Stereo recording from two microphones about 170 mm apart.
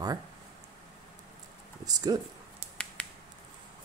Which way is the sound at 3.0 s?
5° left (ahead or behind).